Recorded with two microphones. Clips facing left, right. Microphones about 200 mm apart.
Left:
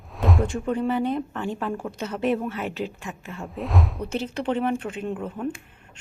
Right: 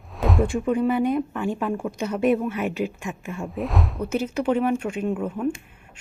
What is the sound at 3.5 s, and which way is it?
Speech, centre (ahead or behind).